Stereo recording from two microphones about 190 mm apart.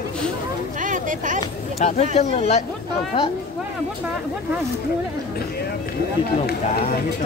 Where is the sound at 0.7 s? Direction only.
45° right (ahead or behind).